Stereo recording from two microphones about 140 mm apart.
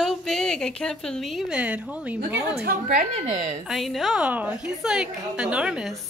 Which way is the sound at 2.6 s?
75° right (ahead or behind).